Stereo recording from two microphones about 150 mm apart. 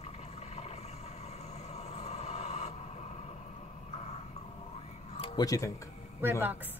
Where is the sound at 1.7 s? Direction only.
45° left (ahead or behind).